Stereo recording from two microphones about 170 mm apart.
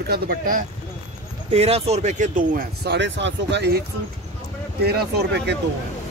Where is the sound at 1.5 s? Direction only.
40° right (ahead or behind); by 3.8 s 85° right.